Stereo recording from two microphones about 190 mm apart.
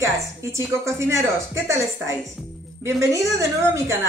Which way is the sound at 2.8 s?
15° right (ahead or behind).